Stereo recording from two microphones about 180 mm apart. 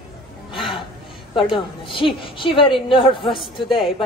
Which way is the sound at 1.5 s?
30° left (ahead or behind).